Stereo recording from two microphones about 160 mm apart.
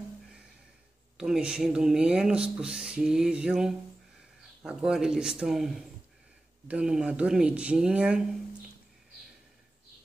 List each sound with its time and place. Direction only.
1.1 s speech: 5° right (ahead or behind)